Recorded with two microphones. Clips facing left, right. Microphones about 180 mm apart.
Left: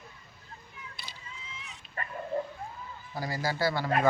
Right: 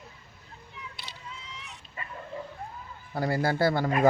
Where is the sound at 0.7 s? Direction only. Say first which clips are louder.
Right 5 dB; 70° right (ahead or behind).